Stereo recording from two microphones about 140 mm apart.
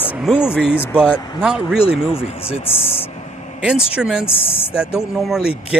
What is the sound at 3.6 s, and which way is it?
Speech, 5° right (ahead or behind).